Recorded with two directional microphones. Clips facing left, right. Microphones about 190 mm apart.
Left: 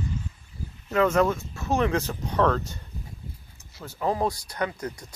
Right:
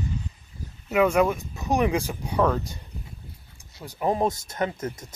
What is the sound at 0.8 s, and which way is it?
Speech, 10° right (ahead or behind).